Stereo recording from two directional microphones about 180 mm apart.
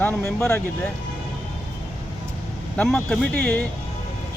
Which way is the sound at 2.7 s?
5° left (ahead or behind).